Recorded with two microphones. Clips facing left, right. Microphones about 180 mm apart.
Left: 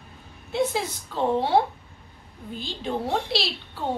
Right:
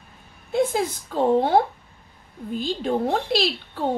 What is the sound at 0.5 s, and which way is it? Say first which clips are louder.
A woman's voice: right 3 dB; 50° right (ahead or behind).